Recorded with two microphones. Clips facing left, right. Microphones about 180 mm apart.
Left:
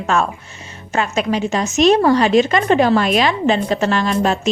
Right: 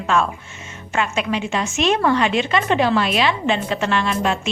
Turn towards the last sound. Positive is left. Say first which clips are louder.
# left 3 dB
turn(degrees=40)  # may be behind; listen again after turning